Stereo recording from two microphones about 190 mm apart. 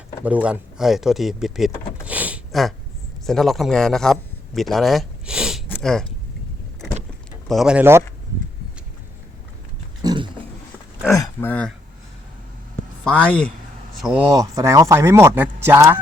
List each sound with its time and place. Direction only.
0.3 s speech: 5° right (ahead or behind)
2.0 s a sound: 10° right (ahead or behind)
3.2 s a man's voice: centre (ahead or behind)
5.6 s a sound: 5° left (ahead or behind)
7.4 s speech: centre (ahead or behind)
10.0 s dog: 20° right (ahead or behind)
11.2 s speech: 10° left (ahead or behind)
13.1 s speech: 5° left (ahead or behind)
14.0 s speech: 10° right (ahead or behind)